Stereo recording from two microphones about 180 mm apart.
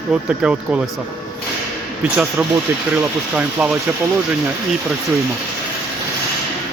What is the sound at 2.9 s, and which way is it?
Speech, 10° right (ahead or behind).